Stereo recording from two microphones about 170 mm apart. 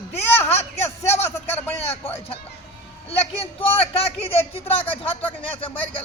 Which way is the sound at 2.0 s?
35° left (ahead or behind).